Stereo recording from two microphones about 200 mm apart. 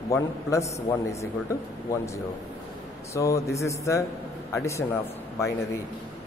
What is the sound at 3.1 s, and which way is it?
Speech, 15° left (ahead or behind).